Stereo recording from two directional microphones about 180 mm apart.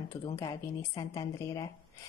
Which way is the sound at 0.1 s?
15° left (ahead or behind).